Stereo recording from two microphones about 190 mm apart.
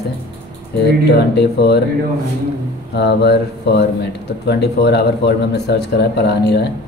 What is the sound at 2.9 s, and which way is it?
Speech, 60° left (ahead or behind).